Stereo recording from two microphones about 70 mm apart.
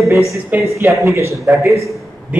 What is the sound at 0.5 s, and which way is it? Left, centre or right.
Speech, right.